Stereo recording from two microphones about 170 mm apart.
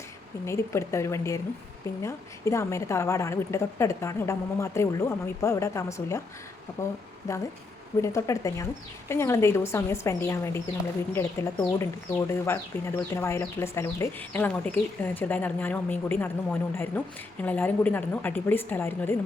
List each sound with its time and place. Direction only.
0.4 s speech: 15° left (ahead or behind)
7.3 s speech: 15° left (ahead or behind)